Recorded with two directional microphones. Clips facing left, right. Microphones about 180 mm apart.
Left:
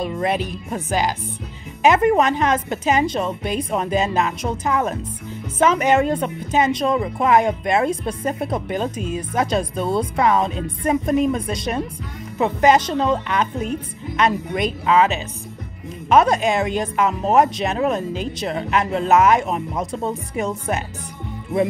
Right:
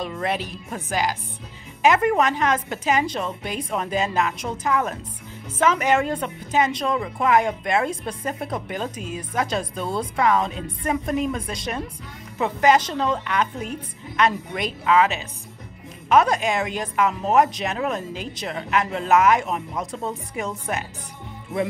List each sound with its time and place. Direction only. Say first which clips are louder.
0.0 s a woman's voice: left 4 dB; 20° left (ahead or behind)